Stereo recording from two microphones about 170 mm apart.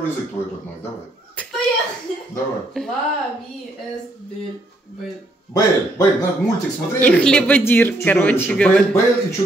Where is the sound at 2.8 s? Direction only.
5° left (ahead or behind).